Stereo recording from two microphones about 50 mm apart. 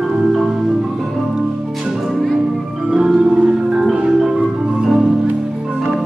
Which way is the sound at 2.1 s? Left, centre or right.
Centre.